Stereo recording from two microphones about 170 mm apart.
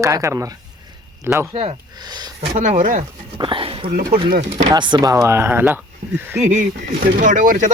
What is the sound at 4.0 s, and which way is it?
Speech, 60° right (ahead or behind).